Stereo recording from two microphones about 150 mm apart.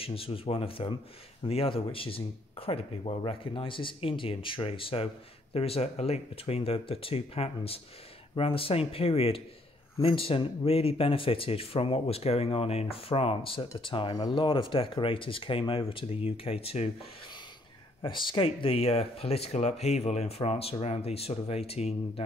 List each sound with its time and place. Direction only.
0.0 s speech: 40° left (ahead or behind)
18.0 s speech: 35° left (ahead or behind)